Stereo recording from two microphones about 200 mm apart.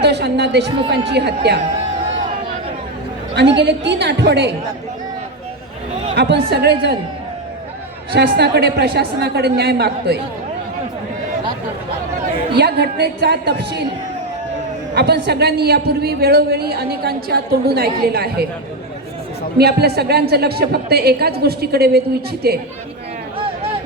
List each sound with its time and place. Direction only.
0.0 s a woman's voice: 55° right (ahead or behind)
3.3 s a woman's voice: 60° right (ahead or behind)
6.2 s a woman's voice: 60° right (ahead or behind)
8.1 s a woman's voice: 55° right (ahead or behind)
12.5 s a woman's voice: 55° right (ahead or behind)
14.9 s a woman's voice: 55° right (ahead or behind)
19.5 s a woman's voice: 50° right (ahead or behind)